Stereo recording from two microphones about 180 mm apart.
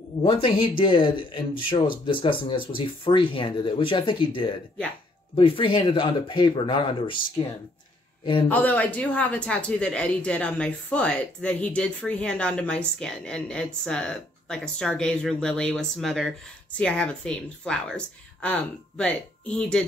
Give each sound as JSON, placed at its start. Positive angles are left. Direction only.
{"t": 0.2, "sound": "speech", "side_deg": 25}
{"t": 8.5, "sound": "speech", "side_deg": 10}